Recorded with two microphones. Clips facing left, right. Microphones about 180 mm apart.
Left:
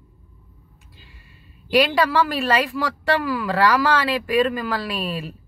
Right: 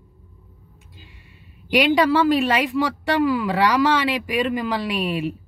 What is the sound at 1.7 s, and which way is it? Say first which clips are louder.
A woman's voice: right 1 dB; 20° right (ahead or behind).